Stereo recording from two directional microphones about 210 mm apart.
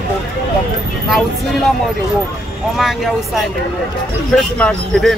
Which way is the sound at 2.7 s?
Centre (ahead or behind).